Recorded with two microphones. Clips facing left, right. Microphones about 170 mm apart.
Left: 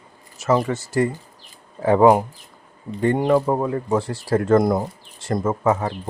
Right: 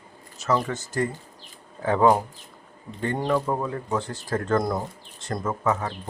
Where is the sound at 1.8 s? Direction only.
30° left (ahead or behind).